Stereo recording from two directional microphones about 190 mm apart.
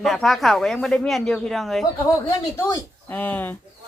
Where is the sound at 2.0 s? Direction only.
20° left (ahead or behind).